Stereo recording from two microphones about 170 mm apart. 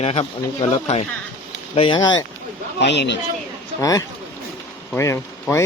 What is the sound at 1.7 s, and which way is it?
Speech, 30° left (ahead or behind).